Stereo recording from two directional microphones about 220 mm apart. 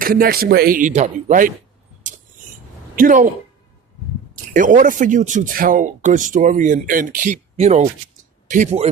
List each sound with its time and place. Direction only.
0.0 s speech: 40° right (ahead or behind)
2.9 s speech: 40° right (ahead or behind)
4.5 s speech: 35° right (ahead or behind)